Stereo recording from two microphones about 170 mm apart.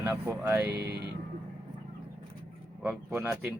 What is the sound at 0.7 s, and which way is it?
Speech, 75° right (ahead or behind).